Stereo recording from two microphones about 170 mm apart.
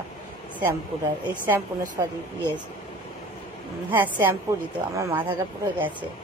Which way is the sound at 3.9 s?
10° right (ahead or behind).